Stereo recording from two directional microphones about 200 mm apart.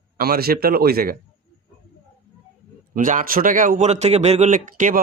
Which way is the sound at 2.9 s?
40° right (ahead or behind).